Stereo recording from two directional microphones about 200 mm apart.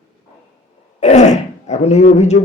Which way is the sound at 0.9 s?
35° left (ahead or behind).